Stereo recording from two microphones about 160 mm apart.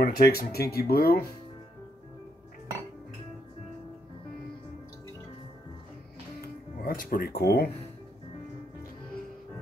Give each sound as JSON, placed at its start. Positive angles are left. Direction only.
{"t": 0.0, "sound": "speech", "side_deg": 70}
{"t": 6.8, "sound": "speech", "side_deg": 65}